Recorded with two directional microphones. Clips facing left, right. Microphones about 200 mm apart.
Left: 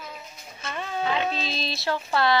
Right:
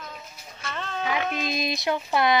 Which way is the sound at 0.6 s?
10° left (ahead or behind).